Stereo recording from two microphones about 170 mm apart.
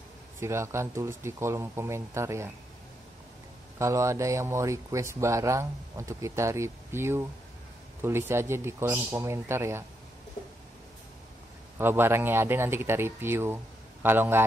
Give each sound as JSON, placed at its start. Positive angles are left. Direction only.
{"t": 0.4, "sound": "speech", "side_deg": -15}
{"t": 3.7, "sound": "speech", "side_deg": -15}
{"t": 11.8, "sound": "speech", "side_deg": -15}